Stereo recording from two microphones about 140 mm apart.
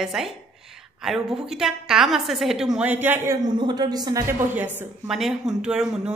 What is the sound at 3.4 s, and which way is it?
Speech, 30° right (ahead or behind).